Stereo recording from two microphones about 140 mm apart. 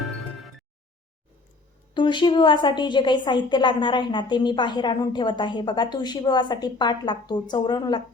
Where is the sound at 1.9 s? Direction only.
35° left (ahead or behind).